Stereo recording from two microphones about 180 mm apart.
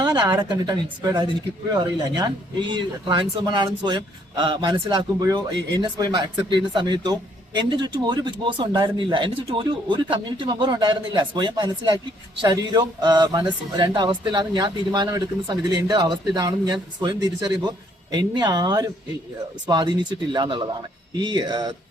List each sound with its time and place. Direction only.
0.0 s speech: 20° right (ahead or behind)